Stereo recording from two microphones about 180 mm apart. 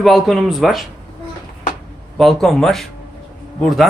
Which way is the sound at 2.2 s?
Centre (ahead or behind).